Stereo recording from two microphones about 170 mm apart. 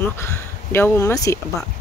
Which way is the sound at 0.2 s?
15° left (ahead or behind).